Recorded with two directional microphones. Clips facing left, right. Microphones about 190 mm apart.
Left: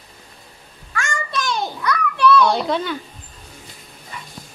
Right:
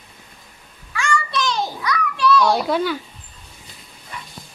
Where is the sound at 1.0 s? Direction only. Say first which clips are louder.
Right 3 dB; 50° left (ahead or behind).